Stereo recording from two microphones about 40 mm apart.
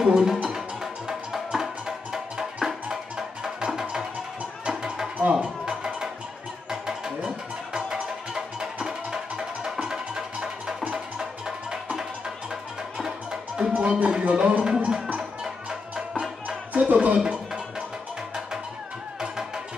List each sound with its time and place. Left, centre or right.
0.0 s speech: centre
0.5 s music: centre
4.6 s a sound: centre
5.3 s music: centre
7.2 s music: centre
16.7 s music: right
17.2 s music: centre
19.1 s music: centre